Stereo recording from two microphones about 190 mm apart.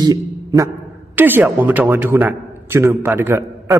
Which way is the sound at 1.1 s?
10° right (ahead or behind).